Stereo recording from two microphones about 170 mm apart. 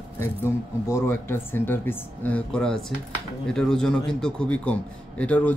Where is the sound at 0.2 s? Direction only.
15° left (ahead or behind).